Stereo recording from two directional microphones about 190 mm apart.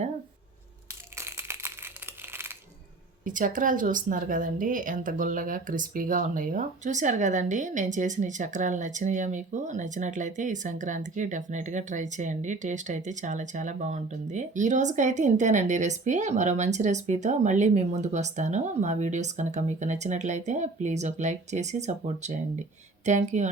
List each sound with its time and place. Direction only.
1.2 s crushing: 15° right (ahead or behind)
3.2 s speech: 45° right (ahead or behind)